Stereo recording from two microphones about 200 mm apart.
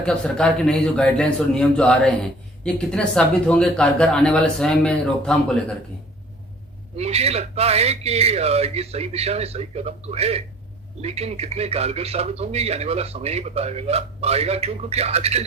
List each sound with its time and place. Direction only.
0.0 s speech: 5° left (ahead or behind)
6.9 s a man's voice: 30° right (ahead or behind)